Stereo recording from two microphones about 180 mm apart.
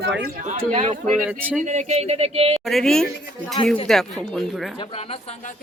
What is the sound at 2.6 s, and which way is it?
Speech, centre (ahead or behind).